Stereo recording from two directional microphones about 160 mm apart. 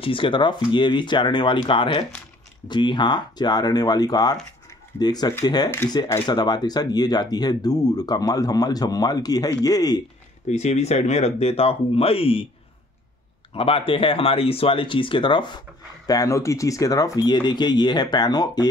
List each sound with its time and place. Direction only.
0.0 s speech: 35° left (ahead or behind)
4.6 s a sound: 25° left (ahead or behind)
5.4 s speech: 25° left (ahead or behind)
10.5 s speech: 45° left (ahead or behind)
13.5 s speech: 35° left (ahead or behind)
16.1 s speech: 20° left (ahead or behind)